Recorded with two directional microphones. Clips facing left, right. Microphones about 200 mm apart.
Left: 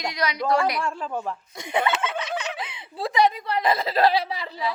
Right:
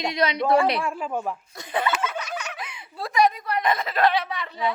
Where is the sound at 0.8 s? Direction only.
10° right (ahead or behind).